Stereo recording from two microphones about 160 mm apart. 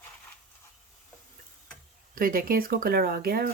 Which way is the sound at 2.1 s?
60° right (ahead or behind).